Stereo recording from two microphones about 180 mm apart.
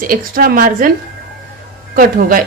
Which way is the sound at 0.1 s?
50° right (ahead or behind).